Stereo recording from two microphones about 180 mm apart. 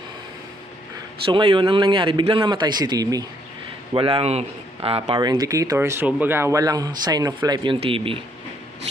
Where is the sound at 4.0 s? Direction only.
30° right (ahead or behind).